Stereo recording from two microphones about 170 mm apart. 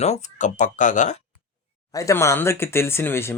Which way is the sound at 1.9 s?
20° left (ahead or behind).